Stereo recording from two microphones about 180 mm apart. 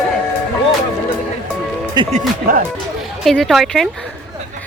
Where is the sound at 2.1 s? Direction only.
40° right (ahead or behind).